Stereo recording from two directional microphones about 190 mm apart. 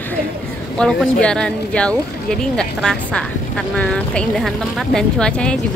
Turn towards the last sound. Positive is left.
turn(degrees=5)  # may be behind; listen again after turning